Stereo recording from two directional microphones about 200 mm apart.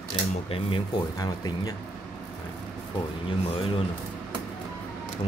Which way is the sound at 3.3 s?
25° left (ahead or behind).